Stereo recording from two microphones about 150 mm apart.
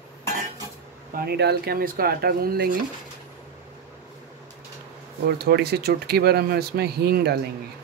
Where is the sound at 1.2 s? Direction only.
90° right.